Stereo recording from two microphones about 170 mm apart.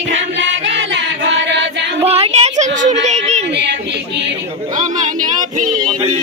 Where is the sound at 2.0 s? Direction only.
35° right (ahead or behind).